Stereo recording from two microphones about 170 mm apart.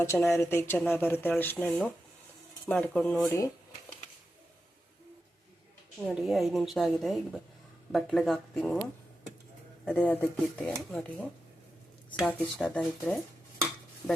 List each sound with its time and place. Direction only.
0.0 s speech: 15° left (ahead or behind)
6.1 s a woman's voice: 5° right (ahead or behind)
12.3 s a woman's voice: 5° left (ahead or behind)